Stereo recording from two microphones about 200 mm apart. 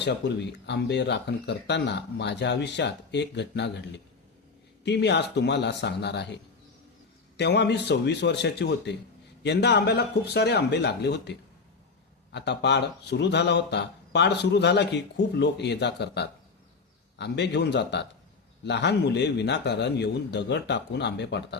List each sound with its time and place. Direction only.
0.0 s speech: 60° left (ahead or behind)
7.3 s speech: 60° left (ahead or behind)